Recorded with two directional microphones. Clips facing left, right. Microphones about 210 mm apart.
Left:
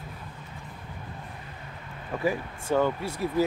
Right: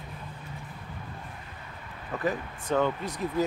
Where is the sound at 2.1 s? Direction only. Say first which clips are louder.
Left 2 dB; 10° left (ahead or behind).